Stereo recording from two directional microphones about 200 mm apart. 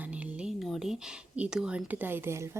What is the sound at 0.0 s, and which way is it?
Speech, 5° right (ahead or behind).